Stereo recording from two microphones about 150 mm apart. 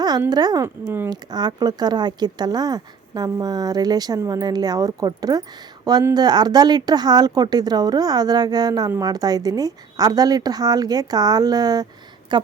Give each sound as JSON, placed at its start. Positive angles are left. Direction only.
{"t": 0.3, "sound": "speech", "side_deg": -25}
{"t": 1.1, "sound": "a woman's voice", "side_deg": -25}